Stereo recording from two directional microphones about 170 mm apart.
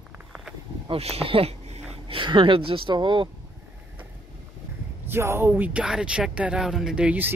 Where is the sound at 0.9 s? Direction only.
35° right (ahead or behind).